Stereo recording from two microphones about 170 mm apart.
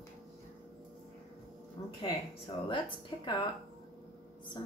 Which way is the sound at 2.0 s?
30° left (ahead or behind).